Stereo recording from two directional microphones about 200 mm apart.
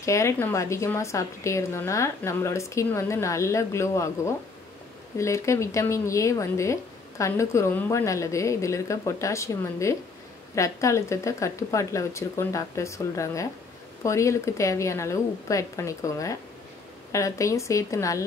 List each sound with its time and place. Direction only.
0.0 s speech: 15° left (ahead or behind)